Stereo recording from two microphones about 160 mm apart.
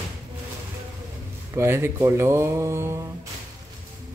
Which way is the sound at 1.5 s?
15° right (ahead or behind).